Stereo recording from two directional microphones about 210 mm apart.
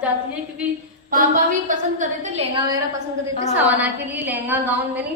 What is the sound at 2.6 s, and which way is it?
Speech, 20° right (ahead or behind).